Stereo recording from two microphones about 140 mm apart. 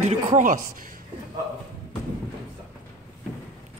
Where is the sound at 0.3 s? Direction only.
65° right (ahead or behind).